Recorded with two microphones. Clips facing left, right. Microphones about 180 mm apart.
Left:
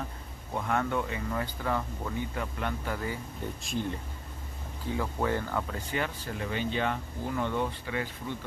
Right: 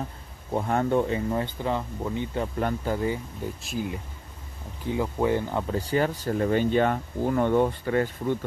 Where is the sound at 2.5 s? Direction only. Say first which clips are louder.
Right 7 dB; 40° right (ahead or behind).